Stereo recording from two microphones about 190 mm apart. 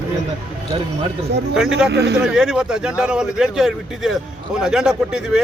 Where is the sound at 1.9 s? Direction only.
60° right (ahead or behind).